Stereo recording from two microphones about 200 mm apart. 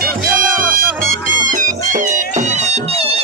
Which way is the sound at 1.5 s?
40° right (ahead or behind).